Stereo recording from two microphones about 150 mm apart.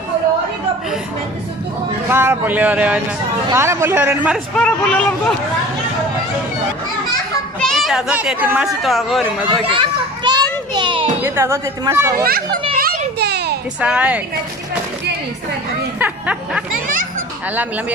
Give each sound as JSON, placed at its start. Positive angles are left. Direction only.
{"t": 2.0, "sound": "a woman's voice", "side_deg": -15}
{"t": 4.6, "sound": "speech", "side_deg": 5}
{"t": 7.6, "sound": "a child's voice", "side_deg": 0}
{"t": 9.7, "sound": "children playing", "side_deg": -30}
{"t": 11.2, "sound": "a woman's voice", "side_deg": -15}
{"t": 12.2, "sound": "a child's voice", "side_deg": -85}
{"t": 12.7, "sound": "children playing", "side_deg": -85}
{"t": 13.7, "sound": "a woman's voice", "side_deg": -10}
{"t": 16.0, "sound": "snicker", "side_deg": -10}